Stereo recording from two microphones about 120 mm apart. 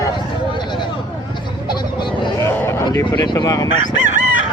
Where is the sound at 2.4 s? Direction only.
20° left (ahead or behind).